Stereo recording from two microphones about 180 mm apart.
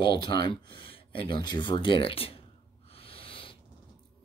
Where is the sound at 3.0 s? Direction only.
30° left (ahead or behind).